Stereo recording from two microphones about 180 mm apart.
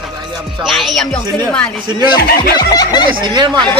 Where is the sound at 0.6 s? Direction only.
Centre (ahead or behind).